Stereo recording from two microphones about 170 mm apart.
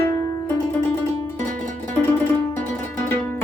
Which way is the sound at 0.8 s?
15° left (ahead or behind).